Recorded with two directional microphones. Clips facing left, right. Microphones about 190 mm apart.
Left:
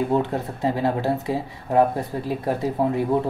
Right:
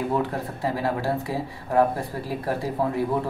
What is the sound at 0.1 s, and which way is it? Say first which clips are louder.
Speech: left 3 dB; 25° left (ahead or behind).